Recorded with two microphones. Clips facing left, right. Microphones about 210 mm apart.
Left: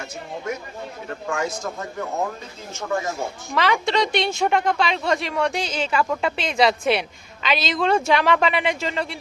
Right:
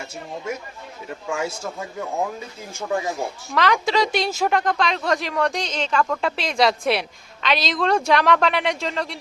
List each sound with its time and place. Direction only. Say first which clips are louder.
1.3 s a man's voice: even; 10° right (ahead or behind)
3.5 s a woman's voice: right 1 dB; centre (ahead or behind)